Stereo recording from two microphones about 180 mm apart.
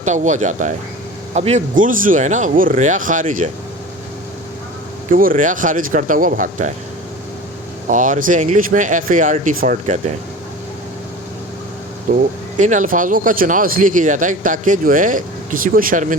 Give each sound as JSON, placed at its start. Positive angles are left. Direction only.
{"t": 0.0, "sound": "speech", "side_deg": -40}
{"t": 5.1, "sound": "speech", "side_deg": -50}
{"t": 7.9, "sound": "speech", "side_deg": -45}
{"t": 12.1, "sound": "speech", "side_deg": -50}